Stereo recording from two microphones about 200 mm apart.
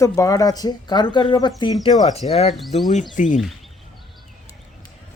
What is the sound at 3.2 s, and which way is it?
Speech, 40° left (ahead or behind).